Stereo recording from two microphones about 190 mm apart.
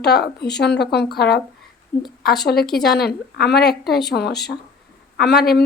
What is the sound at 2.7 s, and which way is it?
A woman's voice, 55° left (ahead or behind).